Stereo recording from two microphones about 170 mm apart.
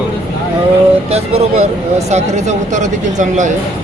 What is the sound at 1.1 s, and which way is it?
Speech, 35° right (ahead or behind).